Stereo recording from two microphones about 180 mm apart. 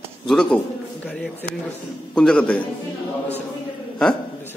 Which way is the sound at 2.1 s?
5° left (ahead or behind).